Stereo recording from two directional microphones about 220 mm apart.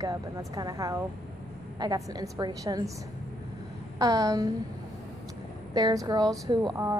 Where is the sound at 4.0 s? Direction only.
15° right (ahead or behind).